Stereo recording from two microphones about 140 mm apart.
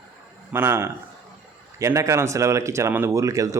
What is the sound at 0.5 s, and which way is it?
A man's voice, 15° right (ahead or behind).